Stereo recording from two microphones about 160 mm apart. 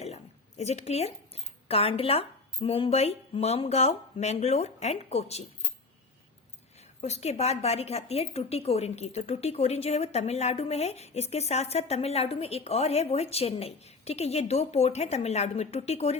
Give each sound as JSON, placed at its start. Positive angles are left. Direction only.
{"t": 0.0, "sound": "a sound", "side_deg": 40}
{"t": 1.6, "sound": "a woman's voice", "side_deg": 40}
{"t": 7.0, "sound": "a woman's voice", "side_deg": 45}